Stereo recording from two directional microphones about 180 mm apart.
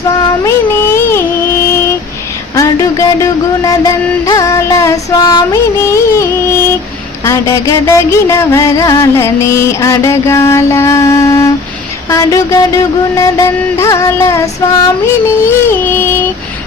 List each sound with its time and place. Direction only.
0.2 s music: 15° left (ahead or behind)
15.4 s yodeling: 10° left (ahead or behind)